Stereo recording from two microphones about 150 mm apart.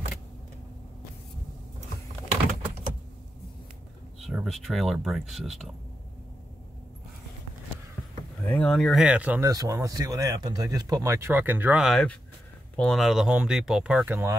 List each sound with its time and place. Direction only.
4.2 s speech: centre (ahead or behind)
8.5 s speech: 5° left (ahead or behind); by 9.4 s 10° right (ahead or behind)
9.4 s speech: 25° right (ahead or behind)